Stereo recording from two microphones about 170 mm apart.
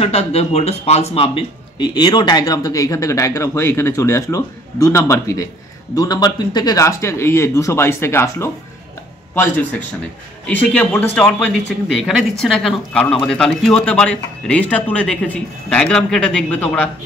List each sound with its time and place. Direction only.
0.0 s speech: 40° left (ahead or behind); by 16.9 s 5° left (ahead or behind)